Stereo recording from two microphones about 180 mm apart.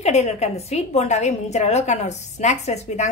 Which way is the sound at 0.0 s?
40° left (ahead or behind).